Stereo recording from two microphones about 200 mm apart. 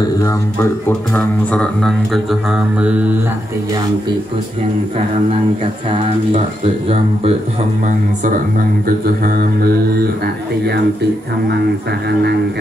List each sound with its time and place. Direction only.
0.2 s speech: 10° left (ahead or behind)
5.9 s speech: 25° right (ahead or behind)
8.8 s mantra: 45° right (ahead or behind)